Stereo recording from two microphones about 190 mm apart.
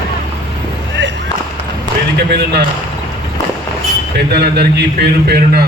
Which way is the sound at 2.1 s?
60° right (ahead or behind).